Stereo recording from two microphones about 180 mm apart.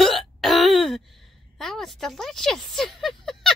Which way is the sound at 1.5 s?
Centre (ahead or behind).